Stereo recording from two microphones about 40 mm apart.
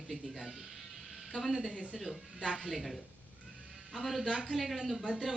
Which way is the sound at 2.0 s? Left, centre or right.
Centre.